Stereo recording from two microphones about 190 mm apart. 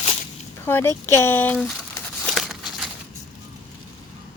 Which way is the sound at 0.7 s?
10° left (ahead or behind).